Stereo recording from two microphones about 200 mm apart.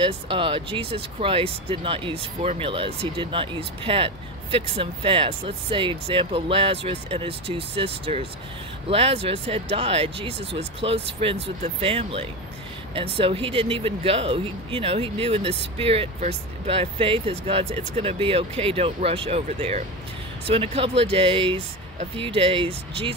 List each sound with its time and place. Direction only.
0.0 s speech: 25° right (ahead or behind)